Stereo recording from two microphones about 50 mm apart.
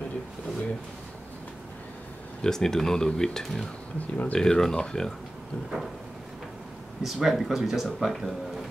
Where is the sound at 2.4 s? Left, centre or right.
Centre.